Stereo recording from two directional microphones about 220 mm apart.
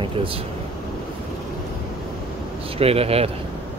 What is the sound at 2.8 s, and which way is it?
Speech, 25° right (ahead or behind).